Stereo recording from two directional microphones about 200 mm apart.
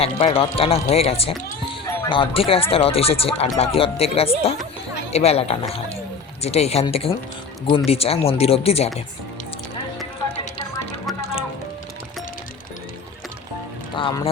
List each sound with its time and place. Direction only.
0.0 s speech: 30° left (ahead or behind)
13.9 s speech: 25° left (ahead or behind)